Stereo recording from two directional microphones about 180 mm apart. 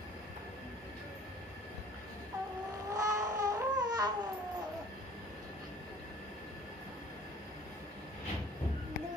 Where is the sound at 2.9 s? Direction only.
20° right (ahead or behind).